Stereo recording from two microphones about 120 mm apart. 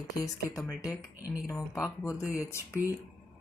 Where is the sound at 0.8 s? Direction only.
10° right (ahead or behind).